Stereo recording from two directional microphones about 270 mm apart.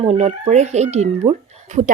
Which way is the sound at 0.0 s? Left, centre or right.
Right.